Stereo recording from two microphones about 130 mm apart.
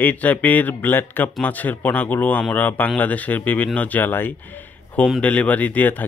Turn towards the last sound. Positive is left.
turn(degrees=15)  # may be behind; listen again after turning